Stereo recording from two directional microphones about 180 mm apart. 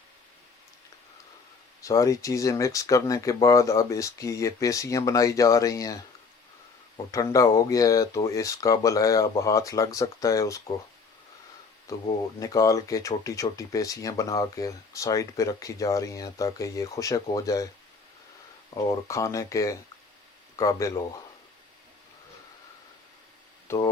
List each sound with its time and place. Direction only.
1.8 s speech: 20° left (ahead or behind)
11.9 s speech: 20° left (ahead or behind)
18.7 s speech: 15° left (ahead or behind)
23.6 s speech: 20° left (ahead or behind)